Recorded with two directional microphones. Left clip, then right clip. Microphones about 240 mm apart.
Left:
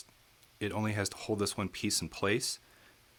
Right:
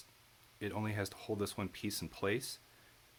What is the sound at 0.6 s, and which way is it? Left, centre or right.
Speech, left.